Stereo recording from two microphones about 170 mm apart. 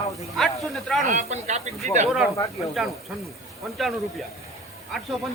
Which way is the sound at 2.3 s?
20° left (ahead or behind).